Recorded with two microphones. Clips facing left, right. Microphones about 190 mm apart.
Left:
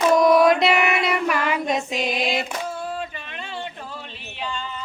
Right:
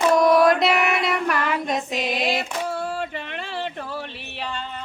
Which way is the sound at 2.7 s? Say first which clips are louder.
Right 2 dB; 70° right (ahead or behind).